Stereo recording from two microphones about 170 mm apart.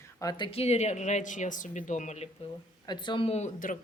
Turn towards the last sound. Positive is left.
turn(degrees=45)  # may be behind; listen again after turning